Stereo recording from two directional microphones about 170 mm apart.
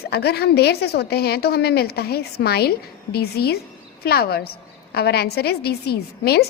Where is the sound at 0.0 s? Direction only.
70° left (ahead or behind).